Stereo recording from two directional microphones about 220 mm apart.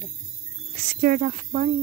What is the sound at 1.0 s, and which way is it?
Speech, 40° right (ahead or behind).